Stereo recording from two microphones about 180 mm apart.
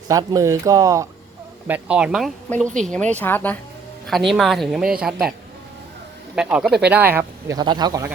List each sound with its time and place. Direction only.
0.1 s a woman's voice: 20° right (ahead or behind); by 5.1 s 5° right (ahead or behind)
6.3 s speech: 5° right (ahead or behind); by 8.1 s 20° right (ahead or behind)